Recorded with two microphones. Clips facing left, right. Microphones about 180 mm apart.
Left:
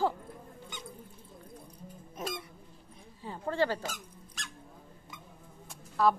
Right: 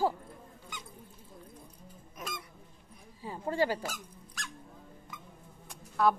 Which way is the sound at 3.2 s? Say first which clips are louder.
Even; 10° right (ahead or behind).